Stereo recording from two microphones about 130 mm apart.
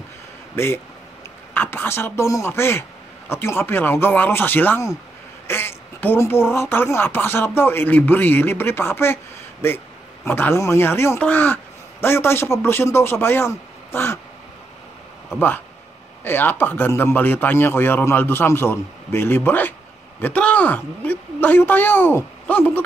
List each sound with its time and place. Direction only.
1.5 s a man's voice: 15° left (ahead or behind)
15.3 s speech: 15° left (ahead or behind)